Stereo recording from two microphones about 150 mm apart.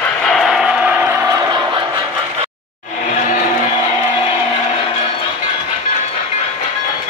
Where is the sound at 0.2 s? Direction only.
Centre (ahead or behind); by 1.8 s 25° right (ahead or behind).